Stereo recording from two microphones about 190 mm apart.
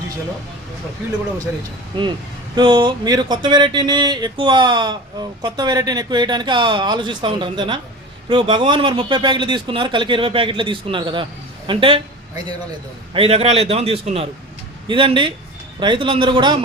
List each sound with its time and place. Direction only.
2.6 s speech: 25° right (ahead or behind)
13.1 s a man's voice: 30° right (ahead or behind)